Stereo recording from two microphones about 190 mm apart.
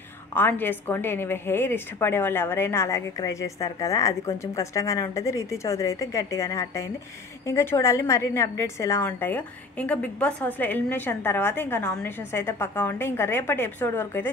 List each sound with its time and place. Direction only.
0.3 s a woman's voice: 10° left (ahead or behind)